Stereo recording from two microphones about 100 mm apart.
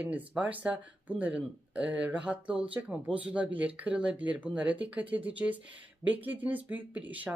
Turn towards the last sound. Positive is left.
turn(degrees=-15)  # may be behind; listen again after turning